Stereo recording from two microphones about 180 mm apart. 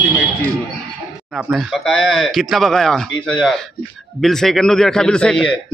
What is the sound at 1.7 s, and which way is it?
A man's voice, centre (ahead or behind).